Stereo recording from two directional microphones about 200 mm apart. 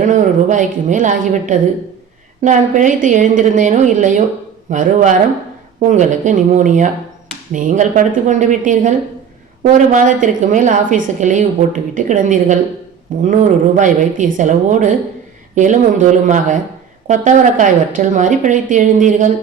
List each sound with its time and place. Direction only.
0.0 s a woman's voice: 40° right (ahead or behind)